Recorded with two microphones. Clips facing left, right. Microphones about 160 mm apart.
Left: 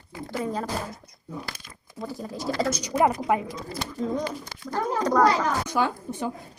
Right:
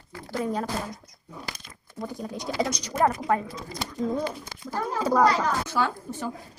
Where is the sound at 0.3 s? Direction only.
Centre (ahead or behind).